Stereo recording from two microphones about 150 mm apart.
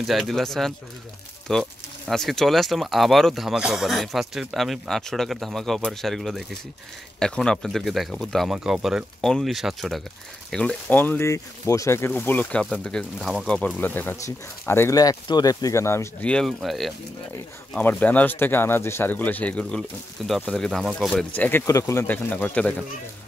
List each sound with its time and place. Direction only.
0.0 s speech: centre (ahead or behind); by 16.3 s 15° left (ahead or behind)
16.3 s speech: 5° left (ahead or behind)
21.4 s speech: 15° left (ahead or behind)